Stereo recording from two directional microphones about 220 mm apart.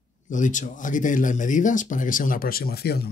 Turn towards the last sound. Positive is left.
turn(degrees=45)  # may be behind; listen again after turning